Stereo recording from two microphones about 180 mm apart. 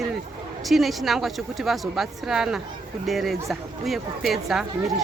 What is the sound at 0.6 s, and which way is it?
Speech, centre (ahead or behind).